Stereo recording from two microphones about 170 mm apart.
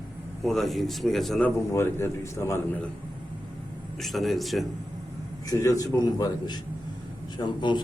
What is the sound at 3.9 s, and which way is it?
Speech, centre (ahead or behind).